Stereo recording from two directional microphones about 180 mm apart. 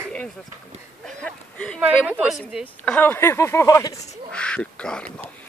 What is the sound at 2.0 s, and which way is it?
Speech, 5° right (ahead or behind).